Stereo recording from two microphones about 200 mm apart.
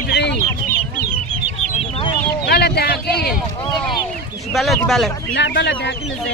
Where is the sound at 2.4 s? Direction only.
55° left (ahead or behind).